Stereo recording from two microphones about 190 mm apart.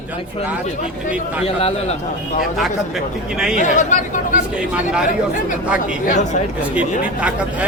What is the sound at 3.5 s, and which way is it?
Speech, 40° left (ahead or behind).